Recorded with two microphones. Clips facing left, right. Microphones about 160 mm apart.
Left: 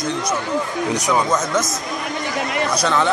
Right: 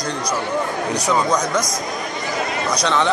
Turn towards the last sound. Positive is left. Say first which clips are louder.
# even
turn(degrees=5)  # may be behind; listen again after turning